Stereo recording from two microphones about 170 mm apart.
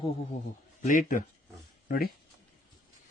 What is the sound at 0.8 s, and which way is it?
Speech, 50° left (ahead or behind).